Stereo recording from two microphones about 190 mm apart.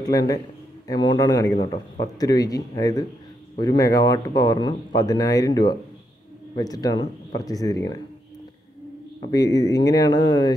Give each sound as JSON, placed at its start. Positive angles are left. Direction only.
{"t": 0.0, "sound": "speech", "side_deg": 20}
{"t": 9.2, "sound": "speech", "side_deg": 20}